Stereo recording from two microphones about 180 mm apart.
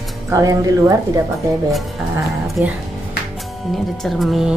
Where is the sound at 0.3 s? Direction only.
20° right (ahead or behind).